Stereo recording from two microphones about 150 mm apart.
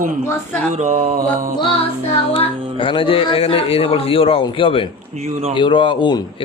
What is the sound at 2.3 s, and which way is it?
Speech, 35° left (ahead or behind).